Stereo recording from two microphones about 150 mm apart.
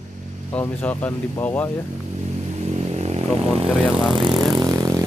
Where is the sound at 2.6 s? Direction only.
45° right (ahead or behind).